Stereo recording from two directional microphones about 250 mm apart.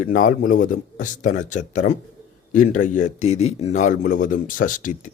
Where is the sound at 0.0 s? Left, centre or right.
Left.